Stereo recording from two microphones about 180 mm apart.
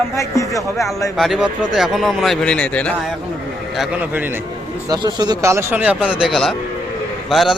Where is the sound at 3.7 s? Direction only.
10° right (ahead or behind).